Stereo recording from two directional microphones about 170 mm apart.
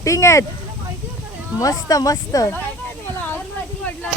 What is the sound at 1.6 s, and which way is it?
Speech, 20° left (ahead or behind).